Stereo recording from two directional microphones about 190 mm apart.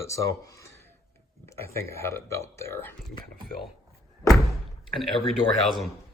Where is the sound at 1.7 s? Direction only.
15° left (ahead or behind).